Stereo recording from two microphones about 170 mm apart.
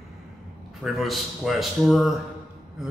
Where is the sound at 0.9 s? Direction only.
Centre (ahead or behind).